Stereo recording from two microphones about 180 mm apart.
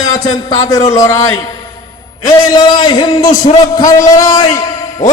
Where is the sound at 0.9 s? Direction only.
20° left (ahead or behind).